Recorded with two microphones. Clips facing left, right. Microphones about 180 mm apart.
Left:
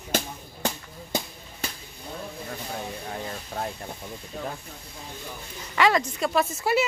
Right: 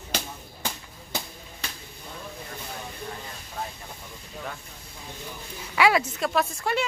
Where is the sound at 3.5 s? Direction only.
70° left (ahead or behind).